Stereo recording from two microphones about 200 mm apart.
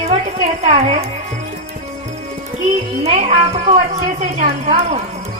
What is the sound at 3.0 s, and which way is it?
A man's voice, 30° right (ahead or behind).